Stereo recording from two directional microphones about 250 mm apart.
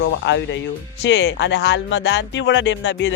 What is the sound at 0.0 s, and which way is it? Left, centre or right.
Speech, left.